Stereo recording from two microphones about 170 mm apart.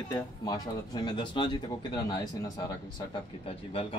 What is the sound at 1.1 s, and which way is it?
Speech, 25° left (ahead or behind).